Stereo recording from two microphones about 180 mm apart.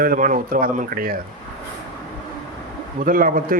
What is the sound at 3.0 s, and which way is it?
Speech, 50° right (ahead or behind).